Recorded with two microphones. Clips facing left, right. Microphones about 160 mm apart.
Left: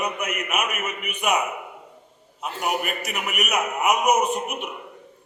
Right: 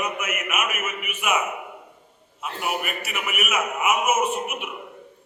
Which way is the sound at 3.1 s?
40° left (ahead or behind).